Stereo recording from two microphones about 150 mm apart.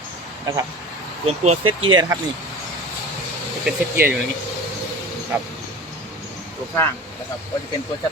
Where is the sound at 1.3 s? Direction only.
45° right (ahead or behind).